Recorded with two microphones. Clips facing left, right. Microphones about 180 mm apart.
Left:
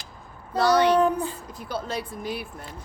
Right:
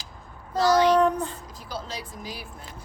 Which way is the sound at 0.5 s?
60° left (ahead or behind).